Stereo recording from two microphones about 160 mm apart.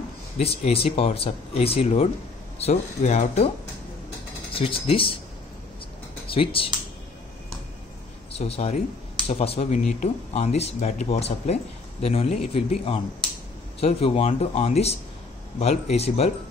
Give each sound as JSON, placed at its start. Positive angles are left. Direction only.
{"t": 0.4, "sound": "speech", "side_deg": 40}
{"t": 4.6, "sound": "speech", "side_deg": 35}
{"t": 6.2, "sound": "speech", "side_deg": 35}
{"t": 8.3, "sound": "speech", "side_deg": 40}